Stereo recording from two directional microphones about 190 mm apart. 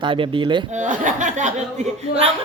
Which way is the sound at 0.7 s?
45° right (ahead or behind).